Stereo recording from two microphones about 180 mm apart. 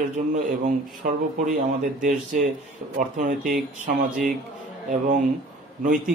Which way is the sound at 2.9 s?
45° right (ahead or behind).